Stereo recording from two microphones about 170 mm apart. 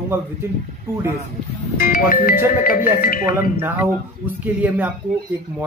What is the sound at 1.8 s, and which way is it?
Music, 55° left (ahead or behind).